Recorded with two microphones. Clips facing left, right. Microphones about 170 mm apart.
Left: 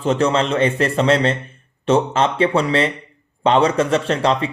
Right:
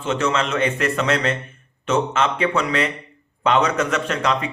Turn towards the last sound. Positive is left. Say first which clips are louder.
# left 4 dB
turn(degrees=30)  # may be behind; listen again after turning